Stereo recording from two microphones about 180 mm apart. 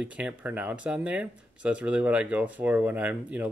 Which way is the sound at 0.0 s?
5° right (ahead or behind).